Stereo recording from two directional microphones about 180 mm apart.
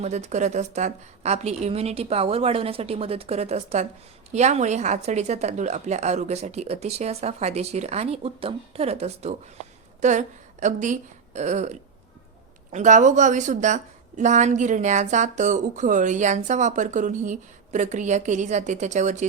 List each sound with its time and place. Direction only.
0.0 s a woman's voice: 40° right (ahead or behind)